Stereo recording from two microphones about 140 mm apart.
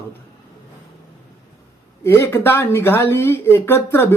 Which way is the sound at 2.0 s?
20° left (ahead or behind).